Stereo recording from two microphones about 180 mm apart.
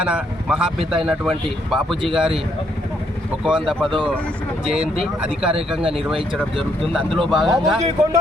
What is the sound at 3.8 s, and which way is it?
Speech, 30° right (ahead or behind).